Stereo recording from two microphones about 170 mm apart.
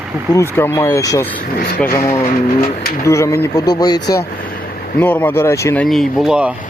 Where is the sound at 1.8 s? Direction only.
15° left (ahead or behind).